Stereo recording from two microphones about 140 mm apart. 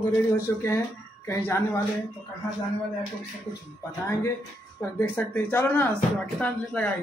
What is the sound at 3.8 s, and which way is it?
Speech, 20° left (ahead or behind).